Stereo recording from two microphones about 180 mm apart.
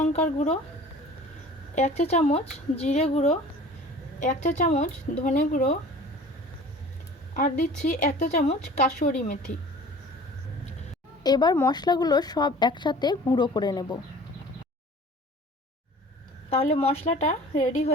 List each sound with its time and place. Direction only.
0.0 s speech: 40° left (ahead or behind)
1.7 s speech: 40° left (ahead or behind)
7.3 s speech: 50° left (ahead or behind)
11.2 s a woman's voice: 20° left (ahead or behind)
16.5 s speech: 35° left (ahead or behind)